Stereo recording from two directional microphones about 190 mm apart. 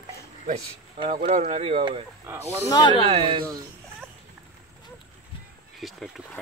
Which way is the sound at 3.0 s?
30° right (ahead or behind).